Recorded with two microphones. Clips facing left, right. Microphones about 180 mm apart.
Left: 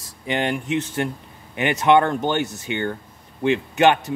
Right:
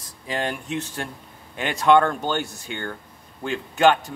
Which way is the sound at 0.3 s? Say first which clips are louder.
Left 4 dB; 20° left (ahead or behind).